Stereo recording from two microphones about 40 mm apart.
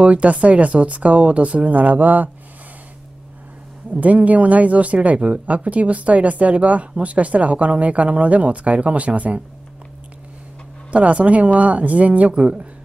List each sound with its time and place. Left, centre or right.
0.0 s speech: right
3.9 s speech: right
10.9 s speech: right